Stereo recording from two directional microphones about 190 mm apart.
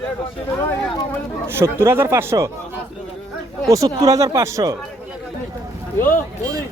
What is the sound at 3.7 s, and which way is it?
Speech, 20° right (ahead or behind).